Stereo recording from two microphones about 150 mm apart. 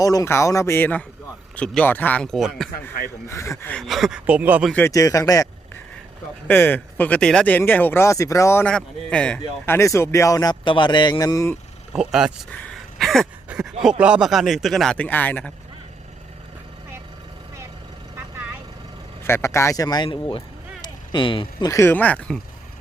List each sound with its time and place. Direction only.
0.0 s speech: 25° left (ahead or behind); by 2.6 s centre (ahead or behind)
3.2 s a man's voice: 20° left (ahead or behind)
3.8 s a man's voice: centre (ahead or behind)
4.9 s a man's voice: 20° left (ahead or behind)
6.5 s speech: 15° left (ahead or behind)
8.6 s speech: 10° left (ahead or behind)
9.6 s a man's voice: 20° left (ahead or behind)
11.9 s a man's voice: 5° right (ahead or behind)
12.5 s a sound: 5° left (ahead or behind)
14.0 s a man's voice: 5° right (ahead or behind); by 15.5 s 10° left (ahead or behind)
19.2 s a man's voice: 15° left (ahead or behind)
20.1 s speech: 35° left (ahead or behind)
21.7 s speech: 20° left (ahead or behind)